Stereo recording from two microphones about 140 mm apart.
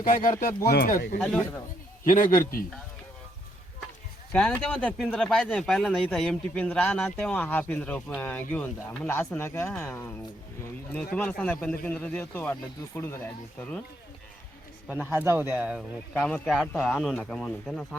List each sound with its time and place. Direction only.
0.0 s speech: 80° left
1.2 s a man's voice: 10° left (ahead or behind)
2.0 s speech: 75° left (ahead or behind)
4.3 s a man's voice: 10° left (ahead or behind)
4.9 s a man's voice: centre (ahead or behind)
14.8 s speech: 15° right (ahead or behind)
16.1 s speech: 10° left (ahead or behind)